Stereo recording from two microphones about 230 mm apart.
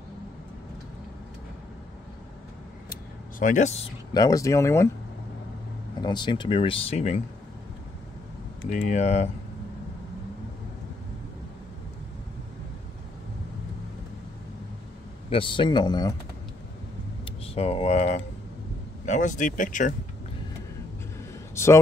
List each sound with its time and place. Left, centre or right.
2.9 s speech: left; by 4.8 s centre
5.9 s speech: centre
8.6 s speech: left
15.2 s speech: left
17.2 s speech: left